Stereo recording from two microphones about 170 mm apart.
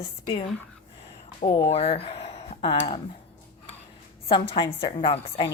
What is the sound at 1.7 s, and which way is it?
Speech, 35° left (ahead or behind).